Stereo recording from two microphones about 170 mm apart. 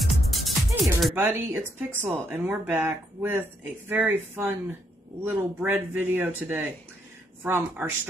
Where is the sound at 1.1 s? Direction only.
15° right (ahead or behind).